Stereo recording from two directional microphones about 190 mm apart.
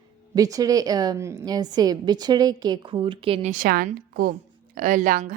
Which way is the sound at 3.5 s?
45° right (ahead or behind).